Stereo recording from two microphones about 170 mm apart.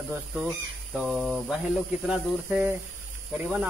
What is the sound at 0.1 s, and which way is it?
Speech, 10° right (ahead or behind).